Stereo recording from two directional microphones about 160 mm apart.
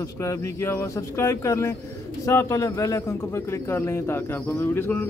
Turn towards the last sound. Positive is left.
turn(degrees=10)  # may be behind; listen again after turning